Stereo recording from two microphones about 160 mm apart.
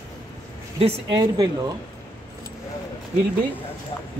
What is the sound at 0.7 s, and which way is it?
Speech, 35° right (ahead or behind).